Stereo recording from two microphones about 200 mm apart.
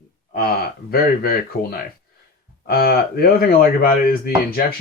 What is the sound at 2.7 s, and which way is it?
Speech, 50° left (ahead or behind).